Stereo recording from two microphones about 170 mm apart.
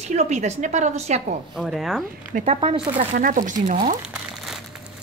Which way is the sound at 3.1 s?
50° right (ahead or behind).